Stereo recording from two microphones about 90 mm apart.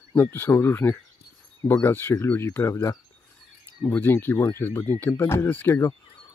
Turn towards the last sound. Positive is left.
turn(degrees=25)  # may be behind; listen again after turning